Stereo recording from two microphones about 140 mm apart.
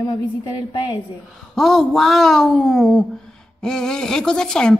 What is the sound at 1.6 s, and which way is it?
A woman's voice, centre (ahead or behind).